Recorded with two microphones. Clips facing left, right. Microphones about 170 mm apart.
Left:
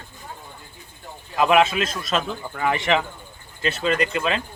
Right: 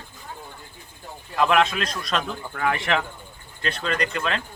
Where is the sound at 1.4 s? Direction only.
5° left (ahead or behind).